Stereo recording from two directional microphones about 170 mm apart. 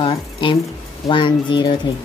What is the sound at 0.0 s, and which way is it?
Speech, 30° left (ahead or behind).